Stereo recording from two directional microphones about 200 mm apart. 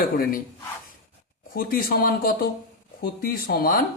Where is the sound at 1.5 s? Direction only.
45° left (ahead or behind).